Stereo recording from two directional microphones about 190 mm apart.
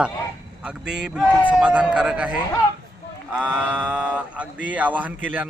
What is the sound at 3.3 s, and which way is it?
Mantra, 5° right (ahead or behind).